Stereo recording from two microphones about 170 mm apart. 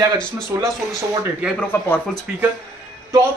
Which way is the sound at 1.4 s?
5° right (ahead or behind).